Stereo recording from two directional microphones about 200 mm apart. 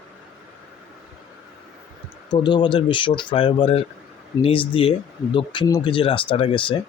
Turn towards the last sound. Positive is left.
turn(degrees=25)  # may be behind; listen again after turning